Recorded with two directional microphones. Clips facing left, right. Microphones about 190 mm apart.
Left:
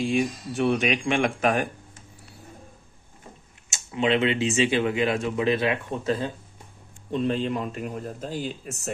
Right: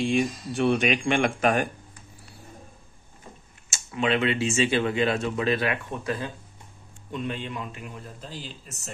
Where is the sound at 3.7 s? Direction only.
20° left (ahead or behind).